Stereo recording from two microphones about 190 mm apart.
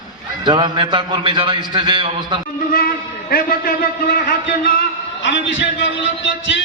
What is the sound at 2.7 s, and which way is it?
A man's voice, 50° left (ahead or behind).